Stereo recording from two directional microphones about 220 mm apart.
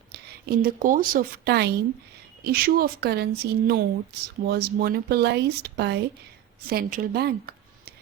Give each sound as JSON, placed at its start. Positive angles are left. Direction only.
{"t": 0.1, "sound": "a woman's voice", "side_deg": -45}